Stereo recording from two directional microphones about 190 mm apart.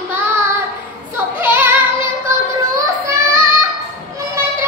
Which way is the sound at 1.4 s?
10° right (ahead or behind).